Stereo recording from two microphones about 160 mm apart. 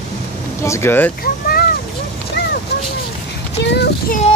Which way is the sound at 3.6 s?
90° left.